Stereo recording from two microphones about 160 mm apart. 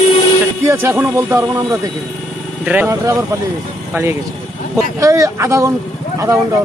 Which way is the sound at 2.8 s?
20° right (ahead or behind).